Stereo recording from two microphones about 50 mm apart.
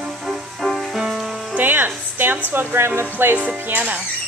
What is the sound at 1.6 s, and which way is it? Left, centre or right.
Music, right.